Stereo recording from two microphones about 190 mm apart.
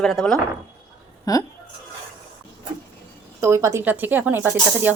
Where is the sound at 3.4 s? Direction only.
15° right (ahead or behind).